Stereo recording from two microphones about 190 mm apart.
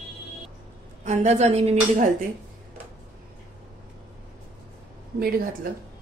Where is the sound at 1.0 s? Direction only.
40° right (ahead or behind).